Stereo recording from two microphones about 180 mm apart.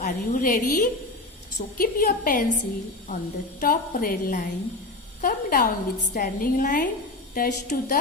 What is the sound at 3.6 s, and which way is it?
A woman's voice, 50° left (ahead or behind).